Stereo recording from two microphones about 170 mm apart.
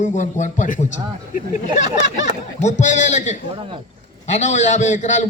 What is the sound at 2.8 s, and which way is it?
A man's voice, 45° left (ahead or behind).